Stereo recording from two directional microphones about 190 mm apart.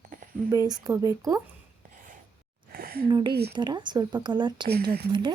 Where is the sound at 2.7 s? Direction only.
55° right (ahead or behind).